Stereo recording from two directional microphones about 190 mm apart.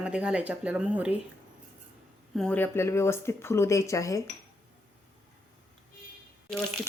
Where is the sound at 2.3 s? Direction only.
5° left (ahead or behind).